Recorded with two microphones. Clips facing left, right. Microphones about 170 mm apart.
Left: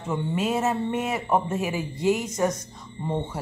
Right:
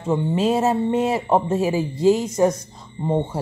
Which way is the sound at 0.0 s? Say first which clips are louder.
Right 6 dB; 30° right (ahead or behind).